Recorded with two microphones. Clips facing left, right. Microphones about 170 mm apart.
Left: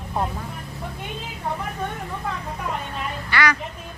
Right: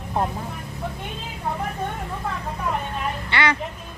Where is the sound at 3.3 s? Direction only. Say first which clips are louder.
Left 1 dB; 25° right (ahead or behind).